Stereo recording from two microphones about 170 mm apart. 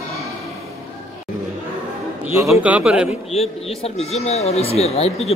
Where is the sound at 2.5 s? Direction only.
10° right (ahead or behind).